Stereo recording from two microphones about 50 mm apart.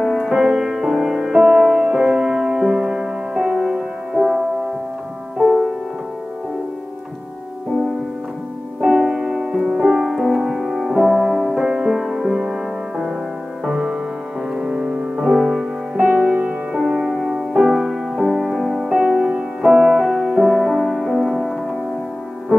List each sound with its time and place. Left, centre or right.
0.0 s music: centre
9.0 s music: centre
11.1 s music: centre
14.5 s music: centre
16.0 s music: right
16.3 s music: right
16.8 s music: centre
19.0 s music: centre